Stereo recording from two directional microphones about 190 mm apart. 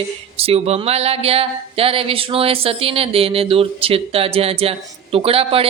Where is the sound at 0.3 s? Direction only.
30° right (ahead or behind).